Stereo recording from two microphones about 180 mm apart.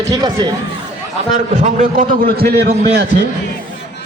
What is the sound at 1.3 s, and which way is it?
A man's voice, 45° right (ahead or behind).